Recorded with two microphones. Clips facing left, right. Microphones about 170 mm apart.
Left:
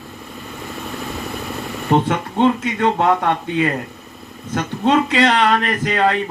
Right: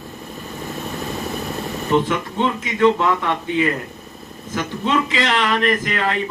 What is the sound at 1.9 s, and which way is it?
Speech, 60° left (ahead or behind).